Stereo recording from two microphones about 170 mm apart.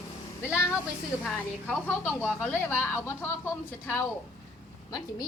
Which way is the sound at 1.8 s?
10° left (ahead or behind).